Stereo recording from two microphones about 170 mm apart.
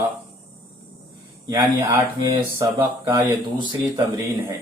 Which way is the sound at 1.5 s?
20° right (ahead or behind).